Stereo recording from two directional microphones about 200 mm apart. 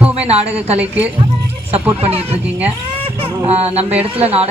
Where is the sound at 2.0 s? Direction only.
30° right (ahead or behind).